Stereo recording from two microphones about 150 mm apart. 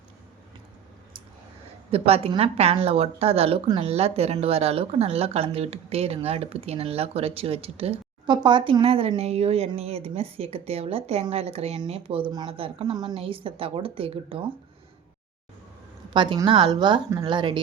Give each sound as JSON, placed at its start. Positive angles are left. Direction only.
{"t": 1.9, "sound": "speech", "side_deg": -40}
{"t": 16.1, "sound": "speech", "side_deg": -30}